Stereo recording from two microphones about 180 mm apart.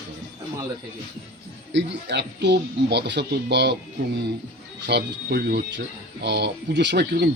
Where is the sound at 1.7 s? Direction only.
75° right (ahead or behind).